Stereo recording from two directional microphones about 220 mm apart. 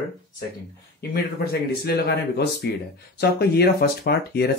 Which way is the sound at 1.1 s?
45° left (ahead or behind).